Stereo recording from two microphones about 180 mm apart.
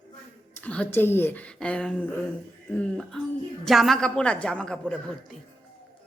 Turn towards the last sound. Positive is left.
turn(degrees=5)  # may be behind; listen again after turning